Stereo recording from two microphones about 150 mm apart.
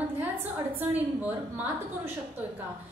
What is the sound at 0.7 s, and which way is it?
Speech, 10° right (ahead or behind).